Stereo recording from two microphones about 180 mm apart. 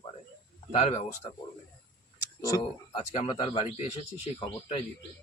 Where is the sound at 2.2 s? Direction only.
20° left (ahead or behind).